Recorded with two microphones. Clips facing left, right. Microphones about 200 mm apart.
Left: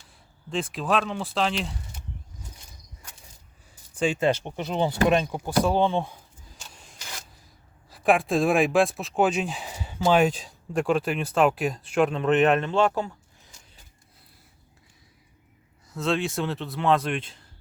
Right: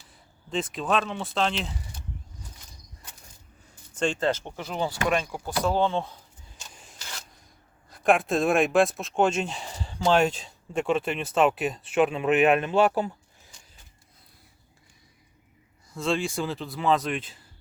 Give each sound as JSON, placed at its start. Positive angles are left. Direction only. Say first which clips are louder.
{"t": 0.1, "sound": "speech", "louder": "even", "side_deg": 0}
{"t": 3.9, "sound": "speech", "louder": "left 2 dB", "side_deg": 5}
{"t": 6.6, "sound": "rub", "louder": "even", "side_deg": 0}
{"t": 7.9, "sound": "speech", "louder": "even", "side_deg": 0}
{"t": 15.9, "sound": "speech", "louder": "left 1 dB", "side_deg": 0}